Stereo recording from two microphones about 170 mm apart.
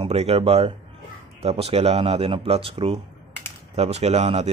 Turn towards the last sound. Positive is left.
turn(degrees=-40)  # may be behind; listen again after turning